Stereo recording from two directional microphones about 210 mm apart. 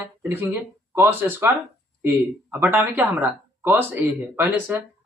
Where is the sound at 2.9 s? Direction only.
10° right (ahead or behind).